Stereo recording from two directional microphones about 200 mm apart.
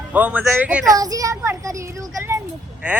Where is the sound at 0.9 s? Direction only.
15° right (ahead or behind).